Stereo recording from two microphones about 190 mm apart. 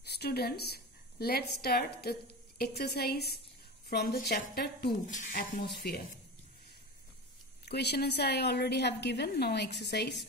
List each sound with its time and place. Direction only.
0.0 s a woman's voice: 60° left (ahead or behind)
7.6 s a woman's voice: 60° left (ahead or behind)